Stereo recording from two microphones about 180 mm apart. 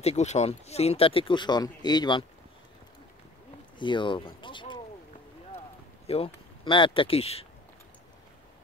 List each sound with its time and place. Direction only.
0.0 s speech: 35° left (ahead or behind)
3.7 s speech: 25° left (ahead or behind)
6.0 s speech: 35° left (ahead or behind)